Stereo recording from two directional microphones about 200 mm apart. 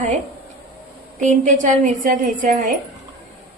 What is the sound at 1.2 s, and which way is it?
A woman's voice, 35° right (ahead or behind).